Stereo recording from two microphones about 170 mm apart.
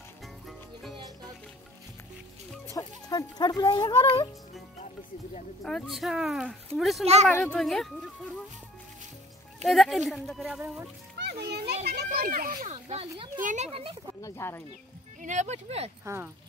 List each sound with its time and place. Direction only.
0.2 s music: centre (ahead or behind)
0.9 s music: 25° right (ahead or behind)
2.7 s speech: 20° left (ahead or behind)
5.6 s speech: 5° left (ahead or behind)
9.7 s speech: centre (ahead or behind)
11.1 s children playing: 75° right (ahead or behind); by 12.5 s 55° right (ahead or behind)
12.6 s speech: 40° right (ahead or behind)
13.4 s speech: 50° right (ahead or behind)
14.2 s speech: 15° left (ahead or behind)
15.1 s speech: 45° right (ahead or behind)